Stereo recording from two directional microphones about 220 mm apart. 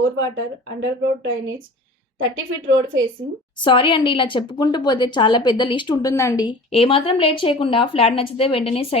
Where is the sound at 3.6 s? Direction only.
20° left (ahead or behind).